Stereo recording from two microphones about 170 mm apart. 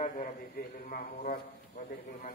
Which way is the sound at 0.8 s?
60° left (ahead or behind).